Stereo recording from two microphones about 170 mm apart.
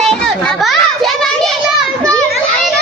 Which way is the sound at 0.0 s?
5° left (ahead or behind).